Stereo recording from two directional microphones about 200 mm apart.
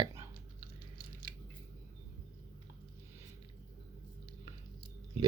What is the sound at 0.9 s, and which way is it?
Squish, 45° right (ahead or behind).